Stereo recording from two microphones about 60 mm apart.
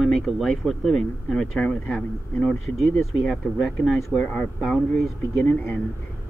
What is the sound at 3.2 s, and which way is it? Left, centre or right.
Speech, centre.